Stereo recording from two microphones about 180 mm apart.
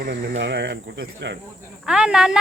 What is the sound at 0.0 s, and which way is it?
Speech, 70° right (ahead or behind).